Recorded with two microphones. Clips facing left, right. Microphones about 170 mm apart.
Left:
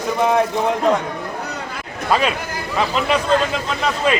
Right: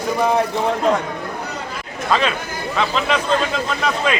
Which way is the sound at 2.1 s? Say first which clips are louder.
Left 1 dB; 10° left (ahead or behind).